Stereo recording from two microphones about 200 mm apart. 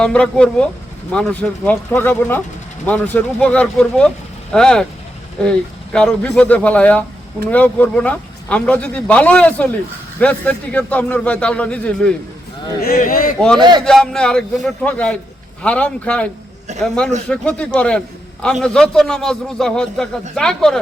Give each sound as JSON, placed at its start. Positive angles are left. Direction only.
{"t": 0.0, "sound": "a man's voice", "side_deg": 5}
{"t": 12.8, "sound": "speech", "side_deg": 45}
{"t": 13.6, "sound": "a man's voice", "side_deg": -20}
{"t": 13.8, "sound": "speech", "side_deg": 0}